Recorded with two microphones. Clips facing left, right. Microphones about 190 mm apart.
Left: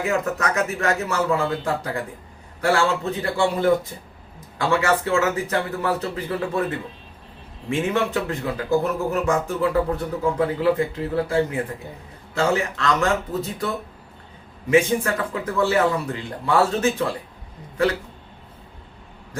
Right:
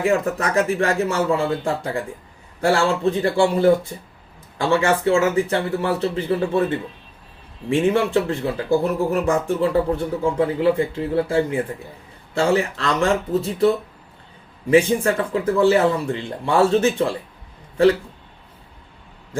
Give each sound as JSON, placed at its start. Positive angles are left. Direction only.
{"t": 0.0, "sound": "speech", "side_deg": -30}